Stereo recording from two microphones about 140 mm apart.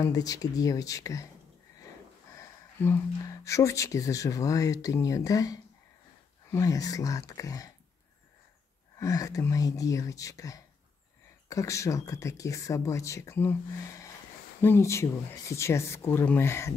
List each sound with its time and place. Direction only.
0.0 s speech: 25° left (ahead or behind)
2.3 s speech: 20° left (ahead or behind)
8.9 s speech: 25° left (ahead or behind)